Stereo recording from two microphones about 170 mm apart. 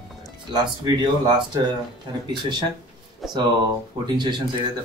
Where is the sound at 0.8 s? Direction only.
25° right (ahead or behind).